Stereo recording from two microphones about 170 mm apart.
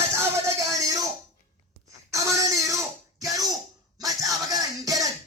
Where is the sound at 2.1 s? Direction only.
20° right (ahead or behind).